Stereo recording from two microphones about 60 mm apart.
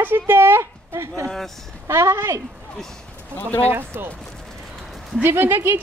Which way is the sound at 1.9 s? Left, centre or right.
Right.